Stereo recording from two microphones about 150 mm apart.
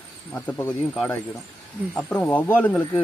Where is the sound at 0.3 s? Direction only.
10° left (ahead or behind).